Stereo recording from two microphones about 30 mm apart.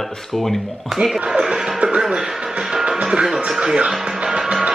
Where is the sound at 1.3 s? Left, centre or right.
Right.